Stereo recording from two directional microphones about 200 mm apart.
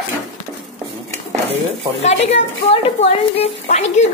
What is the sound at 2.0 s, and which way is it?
A woman's voice, 35° left (ahead or behind).